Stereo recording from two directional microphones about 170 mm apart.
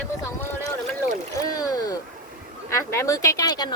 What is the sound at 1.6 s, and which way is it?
Speech, 20° left (ahead or behind).